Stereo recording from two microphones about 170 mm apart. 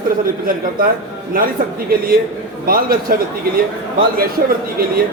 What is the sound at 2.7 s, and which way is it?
Speech, 60° right (ahead or behind).